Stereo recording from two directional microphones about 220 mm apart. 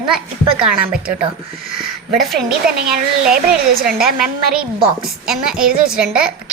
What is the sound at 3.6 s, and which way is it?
Speech, 40° right (ahead or behind).